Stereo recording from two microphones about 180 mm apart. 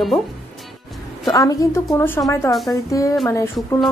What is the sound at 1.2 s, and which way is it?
A woman's voice, 20° left (ahead or behind).